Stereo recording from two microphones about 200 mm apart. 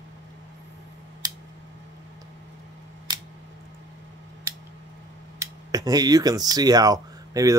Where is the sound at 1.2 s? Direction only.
20° right (ahead or behind).